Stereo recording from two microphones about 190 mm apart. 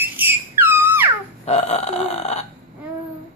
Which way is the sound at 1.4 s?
35° left (ahead or behind).